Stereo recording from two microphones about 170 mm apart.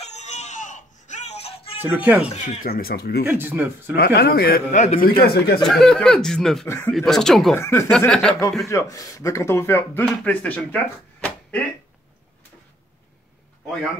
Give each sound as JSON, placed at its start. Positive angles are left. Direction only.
{"t": 0.0, "sound": "a sound", "side_deg": 40}
{"t": 1.8, "sound": "speech", "side_deg": -10}
{"t": 2.2, "sound": "speech", "side_deg": 45}
{"t": 3.3, "sound": "speech", "side_deg": -10}
{"t": 3.9, "sound": "speech", "side_deg": 70}
{"t": 5.2, "sound": "speech", "side_deg": 65}
{"t": 5.6, "sound": "speech", "side_deg": 0}
{"t": 7.5, "sound": "speech", "side_deg": 15}
{"t": 7.9, "sound": "speech", "side_deg": 5}
{"t": 8.6, "sound": "speech", "side_deg": 20}